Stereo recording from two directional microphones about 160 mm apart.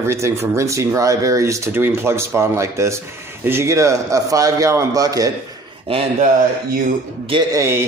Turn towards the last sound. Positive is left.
turn(degrees=-15)  # may be behind; listen again after turning